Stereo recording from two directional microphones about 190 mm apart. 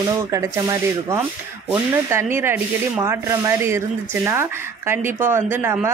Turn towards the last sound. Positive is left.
turn(degrees=-10)  # may be behind; listen again after turning